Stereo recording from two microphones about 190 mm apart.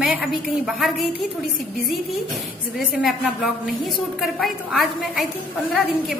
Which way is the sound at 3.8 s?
Centre (ahead or behind).